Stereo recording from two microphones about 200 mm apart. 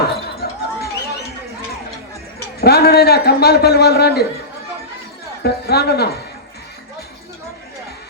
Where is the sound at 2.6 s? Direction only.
50° left (ahead or behind).